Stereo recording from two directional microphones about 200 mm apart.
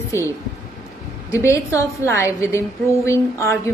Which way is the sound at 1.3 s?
15° left (ahead or behind).